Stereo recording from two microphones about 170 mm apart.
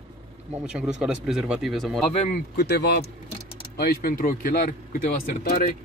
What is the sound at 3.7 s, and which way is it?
A man's voice, 65° left (ahead or behind).